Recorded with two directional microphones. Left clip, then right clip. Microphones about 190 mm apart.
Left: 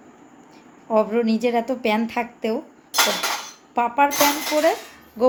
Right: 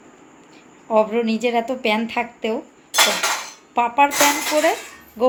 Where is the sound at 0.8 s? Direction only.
10° left (ahead or behind).